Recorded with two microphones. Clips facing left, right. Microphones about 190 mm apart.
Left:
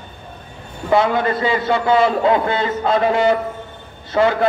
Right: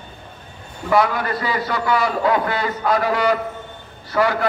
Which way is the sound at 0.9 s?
25° left (ahead or behind).